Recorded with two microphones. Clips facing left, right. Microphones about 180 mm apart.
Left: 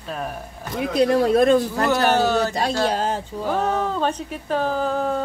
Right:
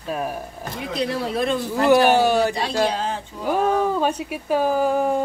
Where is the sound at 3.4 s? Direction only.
10° right (ahead or behind).